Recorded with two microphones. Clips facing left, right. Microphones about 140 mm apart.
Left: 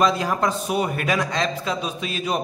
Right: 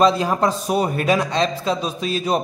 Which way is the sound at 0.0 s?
30° right (ahead or behind).